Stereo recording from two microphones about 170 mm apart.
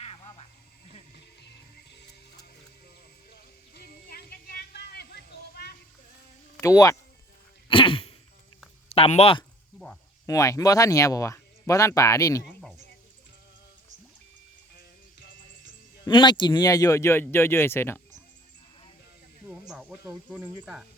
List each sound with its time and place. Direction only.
0.0 s music: 35° left (ahead or behind)
3.8 s music: 65° left (ahead or behind)
6.6 s speech: 20° left (ahead or behind)
7.7 s a sound: 30° left (ahead or behind)
8.9 s speech: 40° left (ahead or behind)
9.7 s cricket: 5° left (ahead or behind)
10.2 s speech: 20° left (ahead or behind)
16.0 s speech: 25° left (ahead or behind)
19.5 s speech: 5° right (ahead or behind)